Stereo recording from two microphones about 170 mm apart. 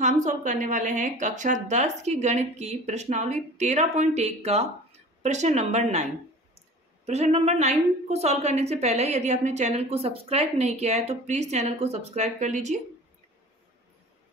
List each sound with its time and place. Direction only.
0.0 s a woman's voice: 45° right (ahead or behind)
7.1 s a woman's voice: 40° right (ahead or behind)